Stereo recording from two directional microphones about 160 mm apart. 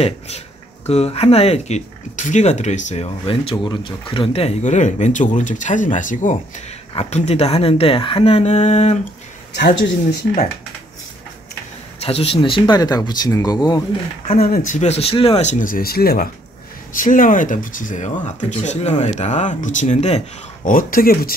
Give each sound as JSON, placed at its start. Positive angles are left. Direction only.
{"t": 0.8, "sound": "speech", "side_deg": 40}
{"t": 6.9, "sound": "a woman's voice", "side_deg": 40}
{"t": 12.0, "sound": "speech", "side_deg": 40}
{"t": 14.4, "sound": "speech", "side_deg": 55}
{"t": 16.9, "sound": "speech", "side_deg": 55}
{"t": 20.6, "sound": "speech", "side_deg": 60}